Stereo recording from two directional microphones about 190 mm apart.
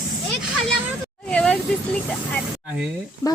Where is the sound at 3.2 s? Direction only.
15° left (ahead or behind).